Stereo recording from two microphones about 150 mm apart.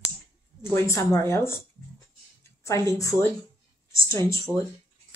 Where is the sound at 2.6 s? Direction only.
20° left (ahead or behind).